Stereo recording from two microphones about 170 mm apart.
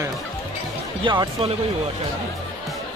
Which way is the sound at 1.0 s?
30° right (ahead or behind).